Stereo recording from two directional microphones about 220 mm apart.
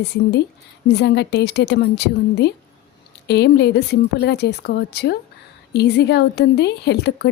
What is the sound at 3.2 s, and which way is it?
A woman's voice, 50° left (ahead or behind).